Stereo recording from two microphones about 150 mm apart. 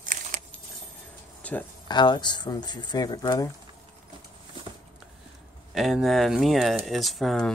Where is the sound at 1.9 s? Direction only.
30° left (ahead or behind).